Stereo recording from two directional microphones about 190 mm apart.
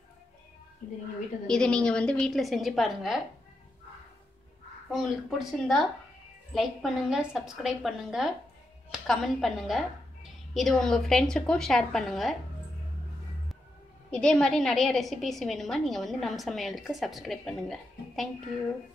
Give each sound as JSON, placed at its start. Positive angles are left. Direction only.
{"t": 1.5, "sound": "a woman's voice", "side_deg": 5}
{"t": 4.9, "sound": "a woman's voice", "side_deg": 0}
{"t": 14.1, "sound": "a woman's voice", "side_deg": 5}